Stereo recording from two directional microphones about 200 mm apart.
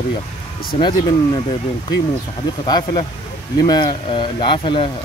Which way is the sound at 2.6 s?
20° left (ahead or behind).